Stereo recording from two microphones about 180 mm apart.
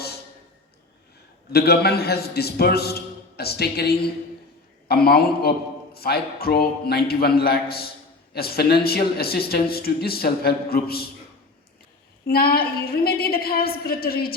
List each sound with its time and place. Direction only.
1.5 s a man's voice: 60° left (ahead or behind)
12.2 s a man's voice: 55° left (ahead or behind)